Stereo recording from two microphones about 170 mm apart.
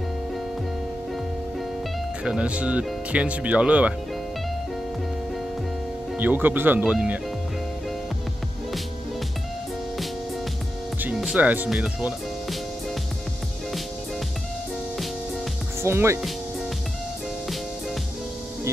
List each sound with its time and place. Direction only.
2.2 s speech: 5° right (ahead or behind)
6.1 s speech: 10° right (ahead or behind)
11.0 s speech: 5° right (ahead or behind)
15.8 s speech: 15° right (ahead or behind)